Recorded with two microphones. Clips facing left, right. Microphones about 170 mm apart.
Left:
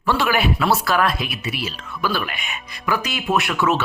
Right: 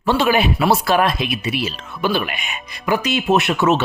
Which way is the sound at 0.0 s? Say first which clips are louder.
Right 3 dB; 20° right (ahead or behind).